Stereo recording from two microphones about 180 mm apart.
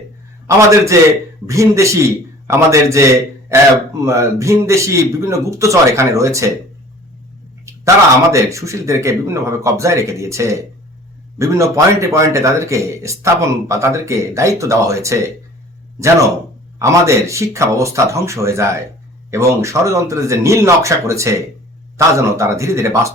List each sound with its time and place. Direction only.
0.4 s speech: 15° right (ahead or behind)
8.3 s speech: 15° right (ahead or behind)
16.7 s speech: 15° right (ahead or behind)